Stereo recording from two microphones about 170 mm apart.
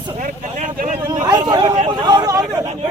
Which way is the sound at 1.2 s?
25° right (ahead or behind).